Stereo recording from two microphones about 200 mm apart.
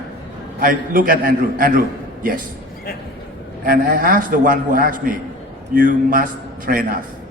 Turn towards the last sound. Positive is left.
turn(degrees=-45)  # may be behind; listen again after turning